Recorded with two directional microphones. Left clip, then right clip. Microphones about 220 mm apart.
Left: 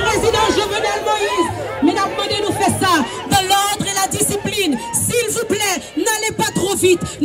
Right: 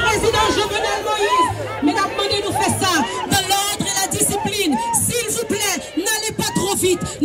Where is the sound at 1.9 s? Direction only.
40° left (ahead or behind).